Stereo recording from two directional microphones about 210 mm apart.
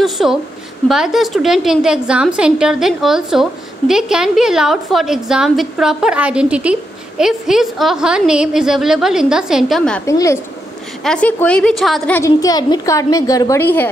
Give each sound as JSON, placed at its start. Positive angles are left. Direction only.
{"t": 0.0, "sound": "a woman's voice", "side_deg": 0}
{"t": 12.2, "sound": "a woman's voice", "side_deg": 15}